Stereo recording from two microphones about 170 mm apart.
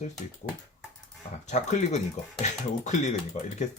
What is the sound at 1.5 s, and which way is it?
Speech, 45° left (ahead or behind).